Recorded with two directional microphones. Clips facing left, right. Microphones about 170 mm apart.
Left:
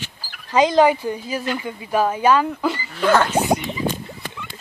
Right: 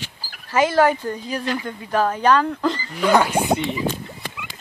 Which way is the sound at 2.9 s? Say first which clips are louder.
Even; 10° right (ahead or behind).